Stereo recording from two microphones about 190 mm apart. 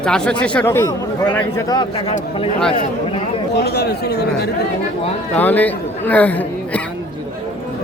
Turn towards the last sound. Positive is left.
turn(degrees=10)  # may be behind; listen again after turning